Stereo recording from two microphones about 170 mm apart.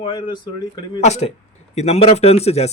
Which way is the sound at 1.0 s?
40° left (ahead or behind).